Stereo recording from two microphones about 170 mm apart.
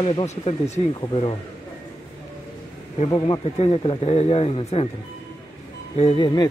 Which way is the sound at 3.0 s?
30° left (ahead or behind).